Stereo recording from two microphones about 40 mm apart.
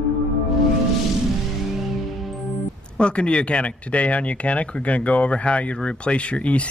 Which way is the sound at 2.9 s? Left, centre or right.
Left.